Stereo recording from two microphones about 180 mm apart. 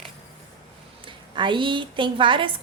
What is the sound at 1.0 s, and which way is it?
A woman's voice, 25° right (ahead or behind).